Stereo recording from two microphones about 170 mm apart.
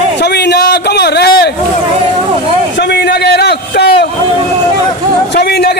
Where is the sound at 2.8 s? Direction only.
80° left.